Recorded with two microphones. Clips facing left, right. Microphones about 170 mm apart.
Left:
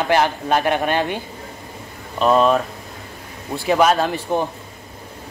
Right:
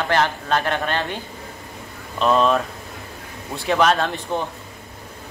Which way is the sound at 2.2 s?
5° left (ahead or behind).